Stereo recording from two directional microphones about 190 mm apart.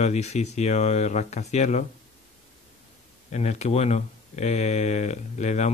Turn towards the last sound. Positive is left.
turn(degrees=35)  # may be behind; listen again after turning